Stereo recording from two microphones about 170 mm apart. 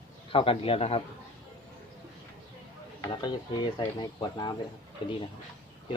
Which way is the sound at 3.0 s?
25° left (ahead or behind).